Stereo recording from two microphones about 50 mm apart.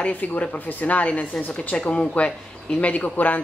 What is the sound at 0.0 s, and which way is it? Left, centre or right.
Speech, left.